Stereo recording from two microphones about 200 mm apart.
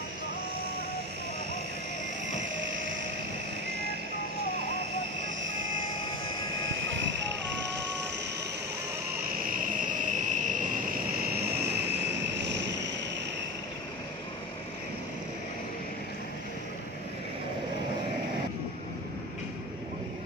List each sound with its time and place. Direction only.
5.4 s vehicle: 75° right (ahead or behind)
6.9 s vehicle: 65° right (ahead or behind)
10.0 s cricket: 40° right (ahead or behind)
11.1 s vehicle: 50° right (ahead or behind)